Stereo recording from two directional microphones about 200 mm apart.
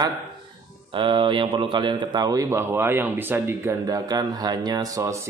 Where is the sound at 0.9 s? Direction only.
25° right (ahead or behind).